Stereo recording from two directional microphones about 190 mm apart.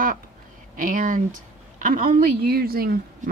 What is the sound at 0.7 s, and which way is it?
A woman's voice, 45° right (ahead or behind).